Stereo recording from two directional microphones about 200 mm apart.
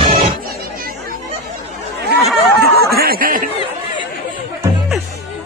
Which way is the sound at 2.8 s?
50° right (ahead or behind).